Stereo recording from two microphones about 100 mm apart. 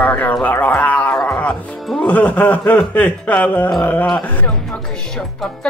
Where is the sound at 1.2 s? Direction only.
15° left (ahead or behind).